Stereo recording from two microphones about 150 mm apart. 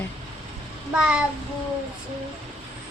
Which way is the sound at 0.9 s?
5° right (ahead or behind).